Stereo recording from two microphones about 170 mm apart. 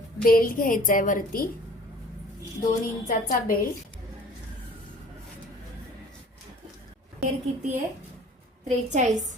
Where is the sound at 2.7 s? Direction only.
50° left (ahead or behind).